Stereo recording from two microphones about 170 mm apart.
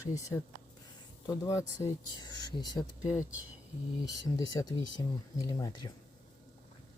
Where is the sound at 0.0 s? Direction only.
20° left (ahead or behind).